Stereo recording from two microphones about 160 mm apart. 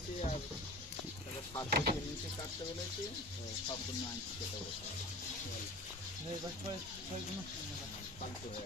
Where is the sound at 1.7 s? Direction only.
90° right.